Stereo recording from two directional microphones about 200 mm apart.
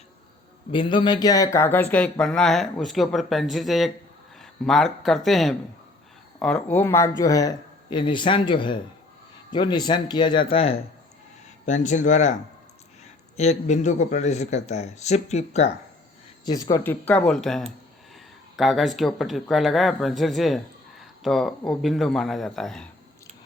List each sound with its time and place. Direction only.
0.7 s a man's voice: 25° left (ahead or behind)
16.5 s speech: 20° left (ahead or behind); by 22.9 s 5° left (ahead or behind)